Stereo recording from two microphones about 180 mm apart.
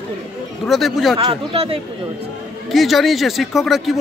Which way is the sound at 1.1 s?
30° right (ahead or behind).